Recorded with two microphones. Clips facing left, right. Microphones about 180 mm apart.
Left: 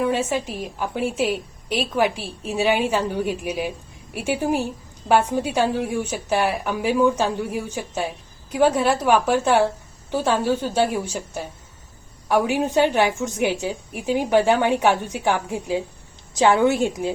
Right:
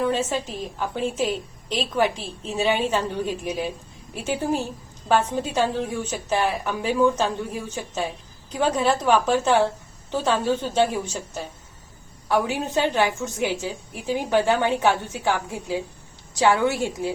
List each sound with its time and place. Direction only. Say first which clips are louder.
0.0 s a woman's voice: left 2 dB; 10° left (ahead or behind)